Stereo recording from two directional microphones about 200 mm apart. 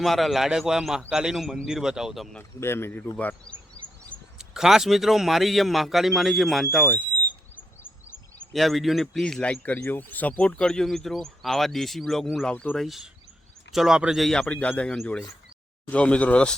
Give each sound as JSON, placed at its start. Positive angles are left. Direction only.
{"t": 0.0, "sound": "a man's voice", "side_deg": 0}
{"t": 2.4, "sound": "a man's voice", "side_deg": 10}
{"t": 8.5, "sound": "a man's voice", "side_deg": 0}